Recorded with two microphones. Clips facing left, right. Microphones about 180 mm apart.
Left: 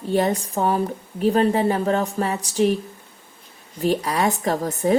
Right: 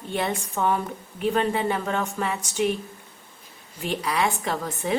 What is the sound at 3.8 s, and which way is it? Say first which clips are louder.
A woman's voice: left 5 dB; 40° left (ahead or behind).